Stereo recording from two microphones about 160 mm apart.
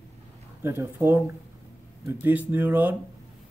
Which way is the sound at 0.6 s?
15° right (ahead or behind).